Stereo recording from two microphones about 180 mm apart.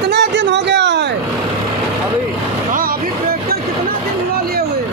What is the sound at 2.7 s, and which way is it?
Vehicle, 50° right (ahead or behind).